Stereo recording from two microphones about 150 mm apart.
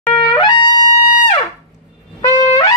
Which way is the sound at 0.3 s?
30° left (ahead or behind).